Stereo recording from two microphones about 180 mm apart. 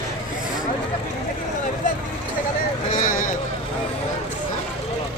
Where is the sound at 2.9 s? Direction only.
50° left (ahead or behind).